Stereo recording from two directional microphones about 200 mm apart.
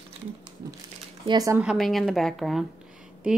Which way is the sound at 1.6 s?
Centre (ahead or behind).